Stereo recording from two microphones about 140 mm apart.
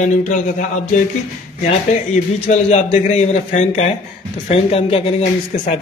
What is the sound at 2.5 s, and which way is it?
Speech, 55° left (ahead or behind).